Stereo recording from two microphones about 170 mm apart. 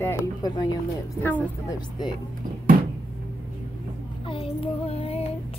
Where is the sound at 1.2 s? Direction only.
10° left (ahead or behind).